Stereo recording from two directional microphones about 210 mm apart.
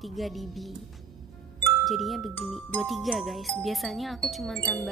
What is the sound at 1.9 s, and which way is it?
Speech, centre (ahead or behind).